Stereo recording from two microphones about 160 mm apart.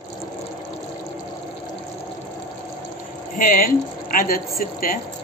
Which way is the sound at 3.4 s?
60° left (ahead or behind).